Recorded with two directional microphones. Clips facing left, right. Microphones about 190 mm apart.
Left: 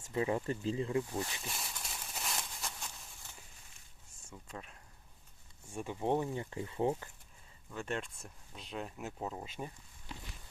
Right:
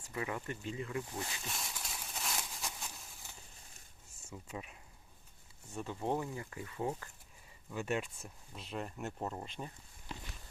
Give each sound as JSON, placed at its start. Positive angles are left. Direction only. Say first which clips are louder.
{"t": 0.0, "sound": "speech", "louder": "left 6 dB", "side_deg": 25}
{"t": 1.5, "sound": "a sound", "louder": "even", "side_deg": 0}
{"t": 4.3, "sound": "speech", "louder": "right 3 dB", "side_deg": -5}
{"t": 5.6, "sound": "speech", "louder": "left 2 dB", "side_deg": 15}
{"t": 7.7, "sound": "speech", "louder": "right 2 dB", "side_deg": -5}